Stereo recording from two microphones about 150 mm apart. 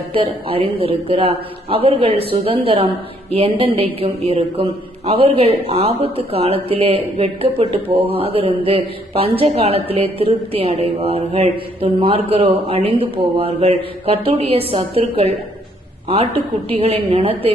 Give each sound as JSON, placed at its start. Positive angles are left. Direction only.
{"t": 0.1, "sound": "a man's voice", "side_deg": -40}